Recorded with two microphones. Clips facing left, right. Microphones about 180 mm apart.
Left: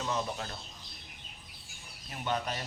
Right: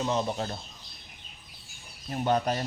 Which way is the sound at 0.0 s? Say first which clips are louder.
Right 6 dB; 25° right (ahead or behind).